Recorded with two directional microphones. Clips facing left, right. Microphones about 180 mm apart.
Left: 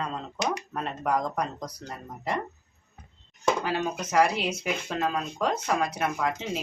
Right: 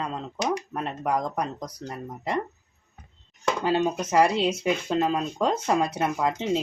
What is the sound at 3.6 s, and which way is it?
Speech, 20° right (ahead or behind).